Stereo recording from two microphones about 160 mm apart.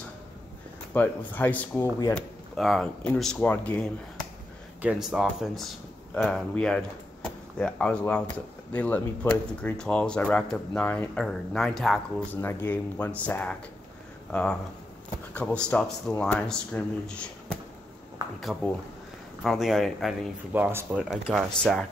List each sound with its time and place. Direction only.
0.9 s speech: 10° left (ahead or behind)
4.8 s speech: 5° right (ahead or behind)
12.4 s speech: 15° left (ahead or behind)
18.4 s speech: centre (ahead or behind)
20.5 s speech: 10° right (ahead or behind)